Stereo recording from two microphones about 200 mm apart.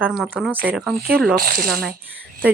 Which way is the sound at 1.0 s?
50° right (ahead or behind).